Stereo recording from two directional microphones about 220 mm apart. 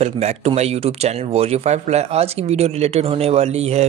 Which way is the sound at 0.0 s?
30° right (ahead or behind).